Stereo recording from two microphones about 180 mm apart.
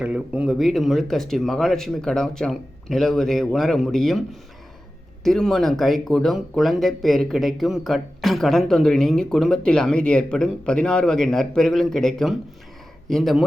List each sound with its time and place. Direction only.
0.0 s speech: 5° right (ahead or behind)